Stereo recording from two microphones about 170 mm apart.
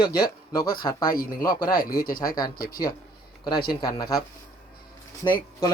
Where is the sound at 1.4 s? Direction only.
25° left (ahead or behind).